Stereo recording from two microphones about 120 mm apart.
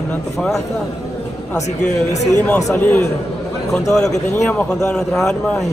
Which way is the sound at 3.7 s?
5° left (ahead or behind).